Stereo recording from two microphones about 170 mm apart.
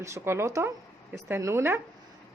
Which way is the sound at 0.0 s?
15° right (ahead or behind).